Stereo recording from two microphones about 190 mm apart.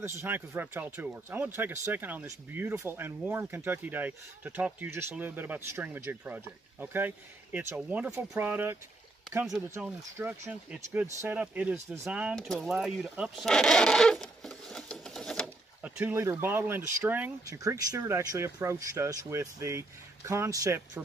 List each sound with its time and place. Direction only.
0.0 s speech: 15° right (ahead or behind)